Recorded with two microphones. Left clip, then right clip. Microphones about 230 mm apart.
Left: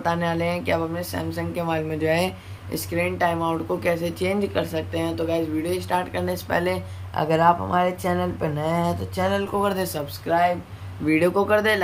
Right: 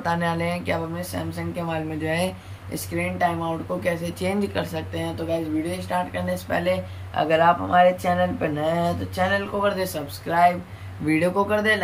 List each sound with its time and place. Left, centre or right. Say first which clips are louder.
0.0 s speech: left 1 dB; centre
7.2 s speech: even; left
10.2 s speech: right 2 dB; centre